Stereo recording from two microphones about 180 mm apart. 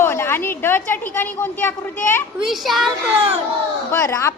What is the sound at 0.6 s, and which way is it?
A woman's voice, 10° left (ahead or behind).